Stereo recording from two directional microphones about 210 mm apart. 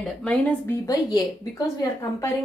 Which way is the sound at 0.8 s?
15° left (ahead or behind).